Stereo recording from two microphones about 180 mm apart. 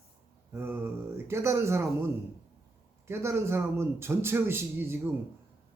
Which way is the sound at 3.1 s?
15° right (ahead or behind).